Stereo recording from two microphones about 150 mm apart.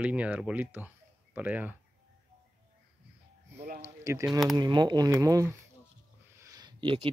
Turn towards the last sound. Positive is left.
turn(degrees=-30)  # may be behind; listen again after turning